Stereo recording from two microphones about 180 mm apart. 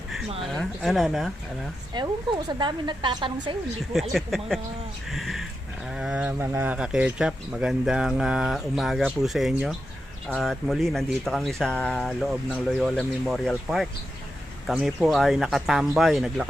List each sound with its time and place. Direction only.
0.5 s speech: centre (ahead or behind)
1.9 s a woman's voice: 25° right (ahead or behind)
3.9 s speech: centre (ahead or behind)